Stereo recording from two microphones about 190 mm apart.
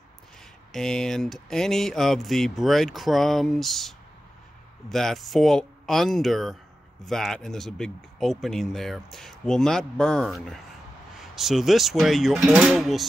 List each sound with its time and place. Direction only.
0.7 s speech: 5° left (ahead or behind)